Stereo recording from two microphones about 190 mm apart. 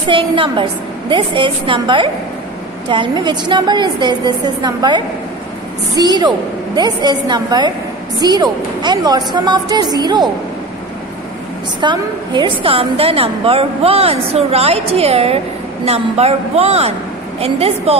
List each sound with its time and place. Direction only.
0.1 s a woman's voice: 25° right (ahead or behind)
11.8 s a woman's voice: 25° right (ahead or behind)